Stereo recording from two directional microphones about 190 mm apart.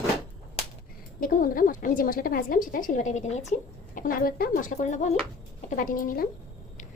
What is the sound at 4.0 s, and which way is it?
Speech, 45° left (ahead or behind).